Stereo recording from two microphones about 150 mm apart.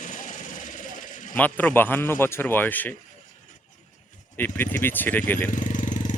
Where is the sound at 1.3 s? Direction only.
10° left (ahead or behind).